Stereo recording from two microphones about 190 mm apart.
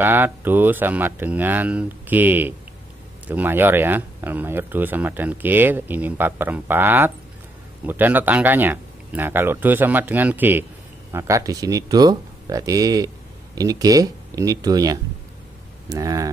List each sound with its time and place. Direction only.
0.0 s speech: 10° right (ahead or behind)